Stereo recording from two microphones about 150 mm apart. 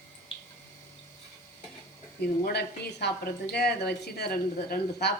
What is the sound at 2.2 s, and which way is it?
Speech, 90° left.